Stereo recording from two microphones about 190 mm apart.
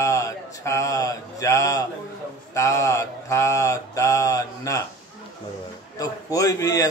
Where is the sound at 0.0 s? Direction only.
15° left (ahead or behind).